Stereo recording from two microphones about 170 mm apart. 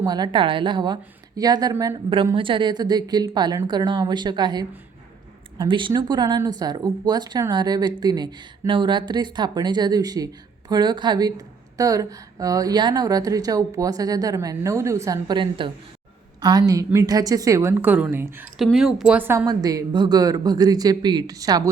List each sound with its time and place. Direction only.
0.0 s speech: 25° right (ahead or behind)
2.3 s a woman's voice: 30° right (ahead or behind); by 18.4 s 10° right (ahead or behind)
18.5 s a woman's voice: centre (ahead or behind)
19.5 s speech: 20° right (ahead or behind)